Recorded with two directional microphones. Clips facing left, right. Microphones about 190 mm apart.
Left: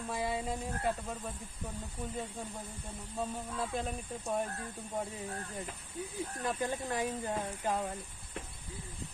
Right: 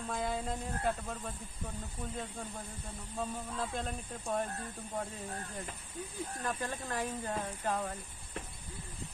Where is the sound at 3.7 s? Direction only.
5° left (ahead or behind).